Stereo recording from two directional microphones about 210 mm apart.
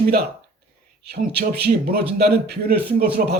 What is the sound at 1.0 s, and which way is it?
A man's voice, 50° right (ahead or behind).